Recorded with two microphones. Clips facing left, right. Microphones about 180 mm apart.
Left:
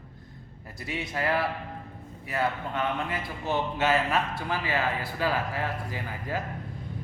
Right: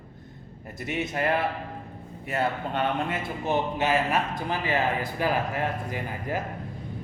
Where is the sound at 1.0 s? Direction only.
20° right (ahead or behind).